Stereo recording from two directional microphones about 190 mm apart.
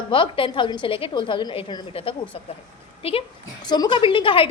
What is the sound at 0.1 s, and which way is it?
A woman's voice, 25° left (ahead or behind).